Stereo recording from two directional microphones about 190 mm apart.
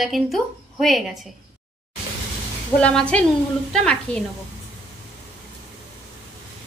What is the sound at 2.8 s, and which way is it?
A woman's voice, 5° left (ahead or behind).